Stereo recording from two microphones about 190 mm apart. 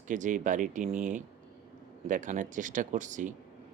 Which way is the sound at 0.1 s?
40° right (ahead or behind).